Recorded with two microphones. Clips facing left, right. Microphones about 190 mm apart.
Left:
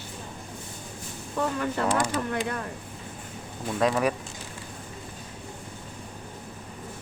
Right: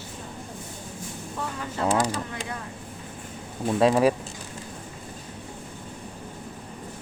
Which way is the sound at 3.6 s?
30° right (ahead or behind).